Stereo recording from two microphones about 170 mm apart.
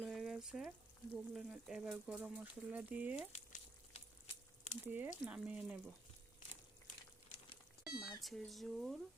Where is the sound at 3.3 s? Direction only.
40° left (ahead or behind).